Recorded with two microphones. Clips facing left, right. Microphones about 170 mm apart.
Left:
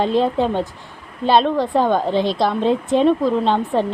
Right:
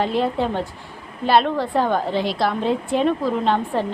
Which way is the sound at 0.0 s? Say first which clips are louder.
Left 3 dB; 20° left (ahead or behind).